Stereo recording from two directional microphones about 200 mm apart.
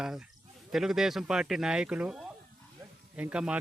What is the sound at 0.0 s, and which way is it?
Speech, 5° right (ahead or behind).